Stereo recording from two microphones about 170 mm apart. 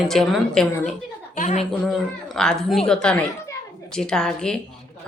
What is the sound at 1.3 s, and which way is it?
Speech, 40° left (ahead or behind).